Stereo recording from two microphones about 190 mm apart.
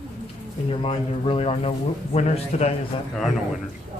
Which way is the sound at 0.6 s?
25° left (ahead or behind).